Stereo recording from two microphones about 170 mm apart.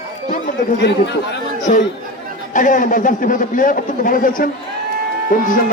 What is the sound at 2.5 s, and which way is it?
A man's voice, 50° left (ahead or behind).